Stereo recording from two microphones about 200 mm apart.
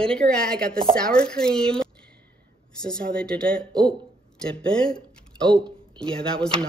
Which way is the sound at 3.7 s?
20° right (ahead or behind).